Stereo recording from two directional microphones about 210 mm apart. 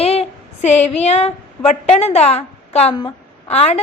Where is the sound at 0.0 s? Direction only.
30° left (ahead or behind).